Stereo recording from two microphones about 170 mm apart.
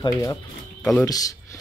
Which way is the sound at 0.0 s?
20° left (ahead or behind).